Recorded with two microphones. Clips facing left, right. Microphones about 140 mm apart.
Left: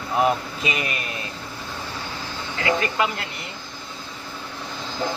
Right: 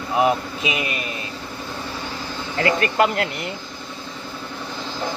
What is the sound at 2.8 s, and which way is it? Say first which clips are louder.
Speech: right 5 dB; 60° right (ahead or behind).